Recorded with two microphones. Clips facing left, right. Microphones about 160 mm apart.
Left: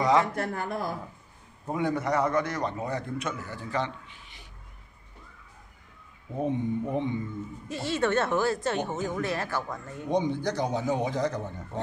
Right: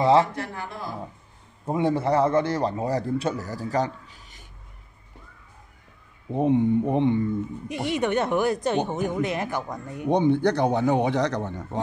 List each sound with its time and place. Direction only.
0.0 s speech: 30° right (ahead or behind)
0.3 s speech: 50° left (ahead or behind)
1.7 s a man's voice: 30° right (ahead or behind)
6.3 s speech: 70° right (ahead or behind)
7.6 s speech: 15° right (ahead or behind)
10.0 s a man's voice: 60° right (ahead or behind); by 11.8 s 75° right (ahead or behind)